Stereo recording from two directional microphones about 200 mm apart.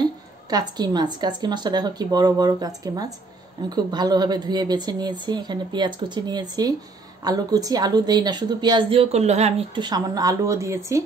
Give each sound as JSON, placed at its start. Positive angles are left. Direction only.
{"t": 0.5, "sound": "a woman's voice", "side_deg": -20}